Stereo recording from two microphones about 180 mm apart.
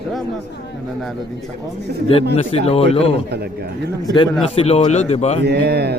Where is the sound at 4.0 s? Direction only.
20° left (ahead or behind).